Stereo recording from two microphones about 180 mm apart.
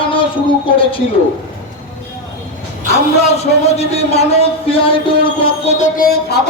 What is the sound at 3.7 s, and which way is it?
A man's voice, 35° left (ahead or behind).